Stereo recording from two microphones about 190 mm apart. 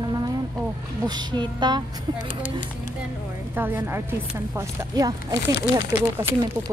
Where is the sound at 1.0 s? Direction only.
25° right (ahead or behind).